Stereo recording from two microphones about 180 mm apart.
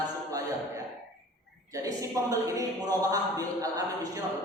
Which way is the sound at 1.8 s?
20° right (ahead or behind).